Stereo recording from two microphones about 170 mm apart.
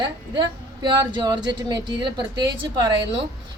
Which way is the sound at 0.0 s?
25° right (ahead or behind).